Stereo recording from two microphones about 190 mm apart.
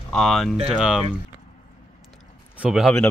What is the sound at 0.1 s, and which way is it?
Speech, centre (ahead or behind).